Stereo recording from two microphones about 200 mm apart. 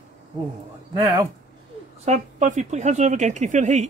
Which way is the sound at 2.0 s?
40° right (ahead or behind).